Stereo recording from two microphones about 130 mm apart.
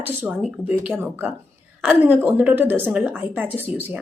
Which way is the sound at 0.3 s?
5° right (ahead or behind).